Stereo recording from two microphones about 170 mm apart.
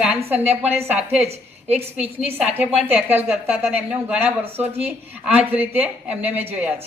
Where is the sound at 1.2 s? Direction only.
40° right (ahead or behind).